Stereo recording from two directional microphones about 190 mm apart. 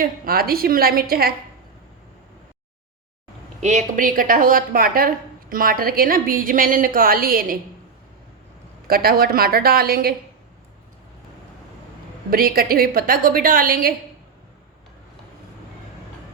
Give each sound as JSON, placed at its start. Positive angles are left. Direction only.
{"t": 0.0, "sound": "a woman's voice", "side_deg": -50}
{"t": 3.6, "sound": "a woman's voice", "side_deg": -40}
{"t": 8.9, "sound": "a woman's voice", "side_deg": -50}
{"t": 12.3, "sound": "a woman's voice", "side_deg": -50}